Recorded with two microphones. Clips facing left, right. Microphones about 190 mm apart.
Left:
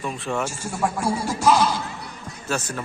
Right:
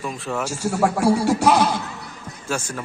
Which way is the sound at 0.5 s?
80° right.